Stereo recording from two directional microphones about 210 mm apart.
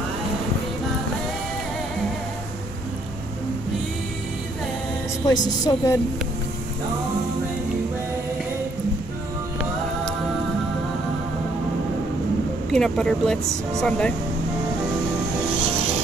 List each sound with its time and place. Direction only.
5.2 s a woman's voice: 20° left (ahead or behind)
12.7 s speech: centre (ahead or behind)